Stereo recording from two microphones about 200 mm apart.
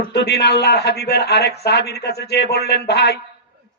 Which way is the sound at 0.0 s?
55° left (ahead or behind).